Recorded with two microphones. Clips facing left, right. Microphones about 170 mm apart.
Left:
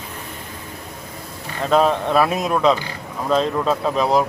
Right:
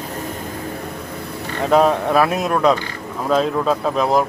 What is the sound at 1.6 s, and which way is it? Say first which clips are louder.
Speech: right 2 dB; 10° right (ahead or behind).